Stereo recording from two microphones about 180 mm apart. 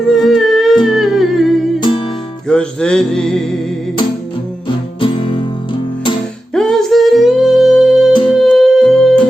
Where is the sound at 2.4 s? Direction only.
5° left (ahead or behind).